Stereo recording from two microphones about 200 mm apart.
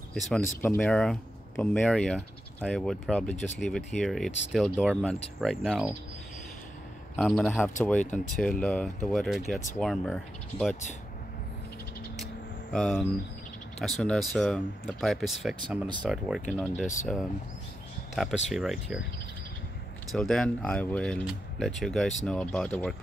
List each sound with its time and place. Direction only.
0.1 s speech: centre (ahead or behind)
7.2 s speech: centre (ahead or behind)
10.7 s speech: 35° left (ahead or behind)
12.7 s speech: centre (ahead or behind)
16.8 s speech: 35° left (ahead or behind)
18.1 s speech: centre (ahead or behind)
20.1 s speech: centre (ahead or behind)